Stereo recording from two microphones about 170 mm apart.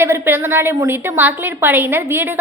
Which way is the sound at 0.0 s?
15° right (ahead or behind).